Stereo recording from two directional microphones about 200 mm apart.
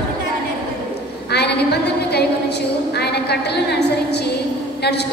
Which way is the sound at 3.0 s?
55° left (ahead or behind).